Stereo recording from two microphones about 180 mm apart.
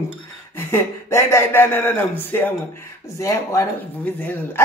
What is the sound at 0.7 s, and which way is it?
Speech, 15° left (ahead or behind).